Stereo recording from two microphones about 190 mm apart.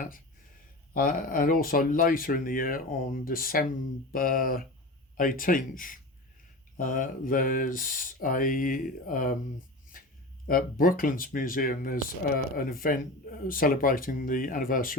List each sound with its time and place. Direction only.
0.9 s speech: 45° left (ahead or behind)
10.4 s speech: 45° left (ahead or behind)